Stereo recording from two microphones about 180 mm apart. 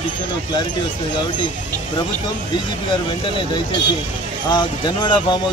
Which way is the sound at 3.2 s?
30° left (ahead or behind).